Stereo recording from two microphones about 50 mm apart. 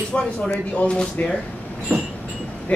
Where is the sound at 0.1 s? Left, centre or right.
Left.